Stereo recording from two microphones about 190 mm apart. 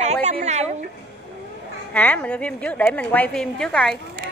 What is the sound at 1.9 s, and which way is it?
A woman's voice, 10° left (ahead or behind).